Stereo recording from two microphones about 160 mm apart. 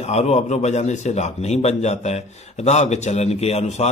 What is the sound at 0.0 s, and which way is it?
A man's voice, 45° left (ahead or behind).